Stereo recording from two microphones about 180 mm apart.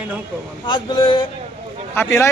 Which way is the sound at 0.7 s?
25° left (ahead or behind).